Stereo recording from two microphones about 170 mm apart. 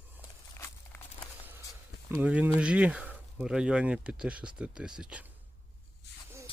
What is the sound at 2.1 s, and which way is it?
Speech, 10° right (ahead or behind).